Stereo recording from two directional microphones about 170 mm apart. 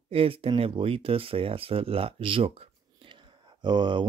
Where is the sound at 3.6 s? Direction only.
25° right (ahead or behind).